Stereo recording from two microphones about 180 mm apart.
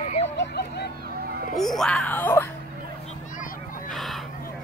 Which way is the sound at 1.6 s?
Centre (ahead or behind).